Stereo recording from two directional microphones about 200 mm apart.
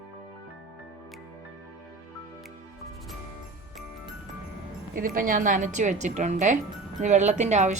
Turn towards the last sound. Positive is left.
turn(degrees=-35)  # may be behind; listen again after turning